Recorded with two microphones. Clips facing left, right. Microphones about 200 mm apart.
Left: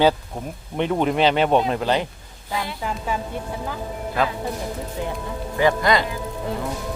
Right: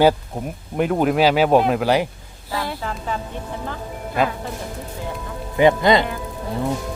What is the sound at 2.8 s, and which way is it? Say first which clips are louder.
Speech: left 1 dB; 10° left (ahead or behind).